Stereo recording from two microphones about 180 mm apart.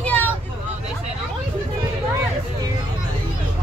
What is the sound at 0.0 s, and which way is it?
Vehicle, 10° left (ahead or behind).